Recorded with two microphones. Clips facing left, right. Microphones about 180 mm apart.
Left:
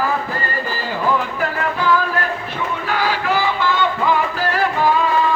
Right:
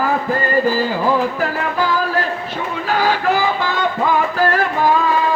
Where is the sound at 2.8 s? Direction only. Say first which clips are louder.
Right 4 dB; 45° right (ahead or behind).